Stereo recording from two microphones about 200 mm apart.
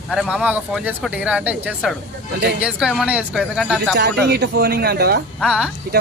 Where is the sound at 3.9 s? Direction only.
55° right (ahead or behind).